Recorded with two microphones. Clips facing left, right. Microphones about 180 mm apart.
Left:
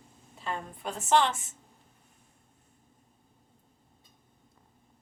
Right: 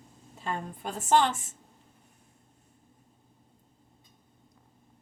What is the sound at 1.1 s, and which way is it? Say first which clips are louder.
Speech: right 1 dB; 45° right (ahead or behind).